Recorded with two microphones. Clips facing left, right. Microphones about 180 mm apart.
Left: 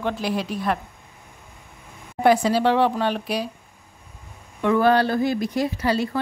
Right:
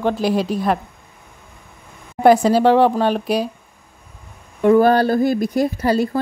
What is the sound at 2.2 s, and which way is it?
A woman's voice, 45° right (ahead or behind).